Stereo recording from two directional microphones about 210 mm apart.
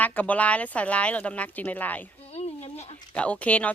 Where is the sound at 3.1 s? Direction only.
5° left (ahead or behind).